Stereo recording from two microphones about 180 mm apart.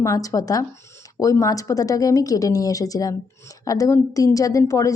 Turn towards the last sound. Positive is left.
turn(degrees=20)  # may be behind; listen again after turning